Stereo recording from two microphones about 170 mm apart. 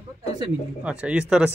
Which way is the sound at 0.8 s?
5° right (ahead or behind).